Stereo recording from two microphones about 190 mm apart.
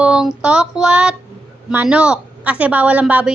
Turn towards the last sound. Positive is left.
turn(degrees=-10)  # may be behind; listen again after turning